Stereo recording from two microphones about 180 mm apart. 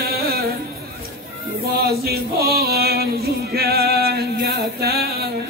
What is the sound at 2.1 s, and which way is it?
Music, 60° right (ahead or behind).